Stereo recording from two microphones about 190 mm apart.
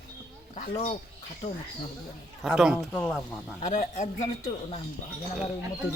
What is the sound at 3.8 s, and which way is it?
A man's voice, 40° left (ahead or behind).